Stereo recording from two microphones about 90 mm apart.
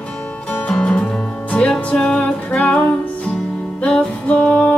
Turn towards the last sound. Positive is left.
turn(degrees=15)  # may be behind; listen again after turning